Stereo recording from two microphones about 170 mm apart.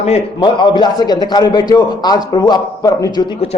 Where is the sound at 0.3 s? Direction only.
25° left (ahead or behind).